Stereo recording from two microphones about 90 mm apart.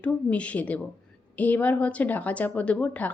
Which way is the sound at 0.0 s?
15° left (ahead or behind).